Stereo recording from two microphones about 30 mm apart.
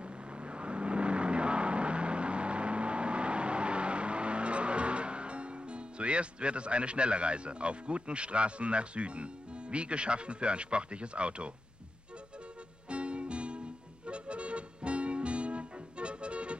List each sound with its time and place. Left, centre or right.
0.4 s vehicle: right
12.9 s music: right